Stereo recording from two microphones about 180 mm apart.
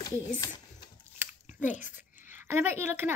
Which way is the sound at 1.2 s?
10° right (ahead or behind).